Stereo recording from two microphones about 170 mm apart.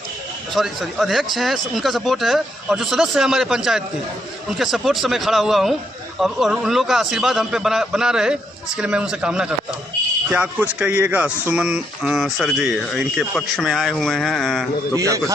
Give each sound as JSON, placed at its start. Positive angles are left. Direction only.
{"t": 0.5, "sound": "a man's voice", "side_deg": 0}
{"t": 14.9, "sound": "a man's voice", "side_deg": -20}